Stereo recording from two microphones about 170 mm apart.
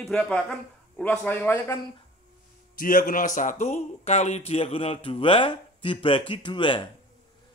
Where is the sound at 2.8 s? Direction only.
55° left (ahead or behind).